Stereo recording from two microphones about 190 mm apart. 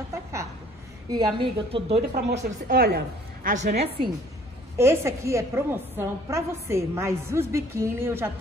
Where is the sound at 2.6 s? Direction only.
55° right (ahead or behind).